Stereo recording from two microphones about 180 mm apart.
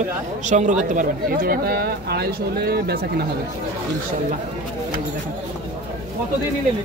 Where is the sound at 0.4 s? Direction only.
40° right (ahead or behind).